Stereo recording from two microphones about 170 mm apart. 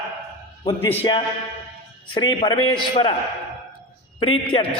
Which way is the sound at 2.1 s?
25° left (ahead or behind).